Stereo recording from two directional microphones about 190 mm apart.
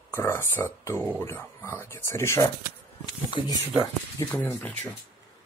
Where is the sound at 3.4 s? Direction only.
25° left (ahead or behind).